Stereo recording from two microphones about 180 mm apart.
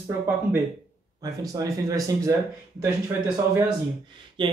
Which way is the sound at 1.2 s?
20° right (ahead or behind).